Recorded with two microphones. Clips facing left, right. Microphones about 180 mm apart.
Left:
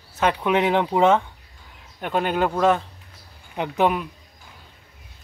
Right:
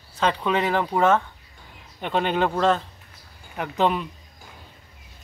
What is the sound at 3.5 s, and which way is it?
Speech, 20° left (ahead or behind).